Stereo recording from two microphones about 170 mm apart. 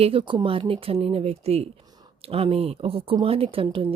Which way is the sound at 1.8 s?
20° right (ahead or behind).